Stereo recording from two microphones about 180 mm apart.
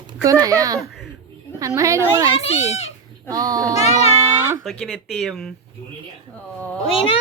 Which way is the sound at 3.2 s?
20° right (ahead or behind).